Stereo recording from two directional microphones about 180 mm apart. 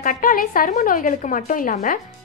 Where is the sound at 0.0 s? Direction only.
50° left (ahead or behind).